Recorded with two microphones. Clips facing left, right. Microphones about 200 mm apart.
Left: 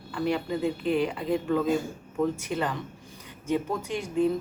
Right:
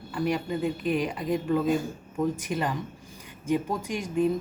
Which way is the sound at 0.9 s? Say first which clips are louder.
Left 2 dB; 10° right (ahead or behind).